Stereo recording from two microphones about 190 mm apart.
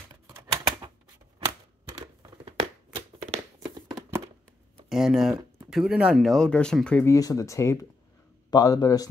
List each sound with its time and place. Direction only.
0.3 s typewriter: 20° right (ahead or behind)
2.4 s a sound: 30° right (ahead or behind)
4.8 s speech: centre (ahead or behind)
7.2 s a man's voice: 15° left (ahead or behind)